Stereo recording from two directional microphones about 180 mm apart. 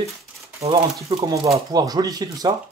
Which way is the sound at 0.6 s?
35° right (ahead or behind).